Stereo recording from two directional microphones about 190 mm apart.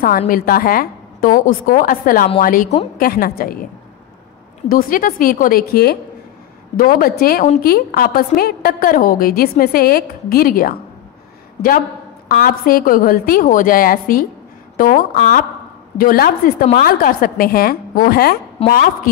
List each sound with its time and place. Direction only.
0.3 s a woman's voice: 50° left (ahead or behind)
4.6 s a woman's voice: 50° left (ahead or behind)
12.3 s a woman's voice: 50° left (ahead or behind)
18.6 s a woman's voice: 30° left (ahead or behind)